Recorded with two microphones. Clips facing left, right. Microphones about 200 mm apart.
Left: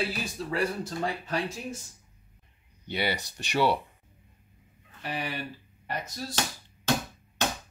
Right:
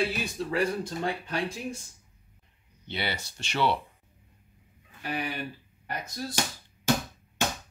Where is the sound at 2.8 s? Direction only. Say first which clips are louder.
Left 3 dB; 10° left (ahead or behind).